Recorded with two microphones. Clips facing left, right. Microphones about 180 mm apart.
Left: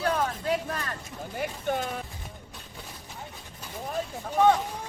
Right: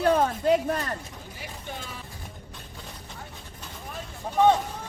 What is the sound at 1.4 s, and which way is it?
Speech, 55° left (ahead or behind).